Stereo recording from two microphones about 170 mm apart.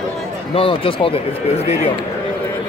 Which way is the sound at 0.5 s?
30° left (ahead or behind).